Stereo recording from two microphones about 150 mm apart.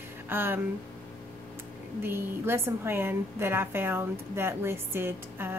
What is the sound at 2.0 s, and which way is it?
A woman's voice, 15° right (ahead or behind).